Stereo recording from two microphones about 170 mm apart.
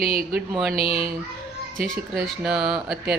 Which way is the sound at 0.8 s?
35° left (ahead or behind).